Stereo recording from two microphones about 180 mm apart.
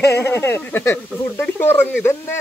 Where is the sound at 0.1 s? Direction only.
15° left (ahead or behind).